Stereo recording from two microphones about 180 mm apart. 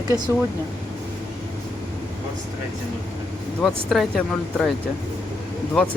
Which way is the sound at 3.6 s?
Centre (ahead or behind).